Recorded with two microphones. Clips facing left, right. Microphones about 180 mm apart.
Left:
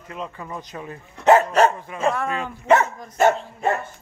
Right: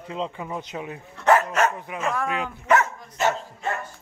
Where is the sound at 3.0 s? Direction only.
55° left (ahead or behind).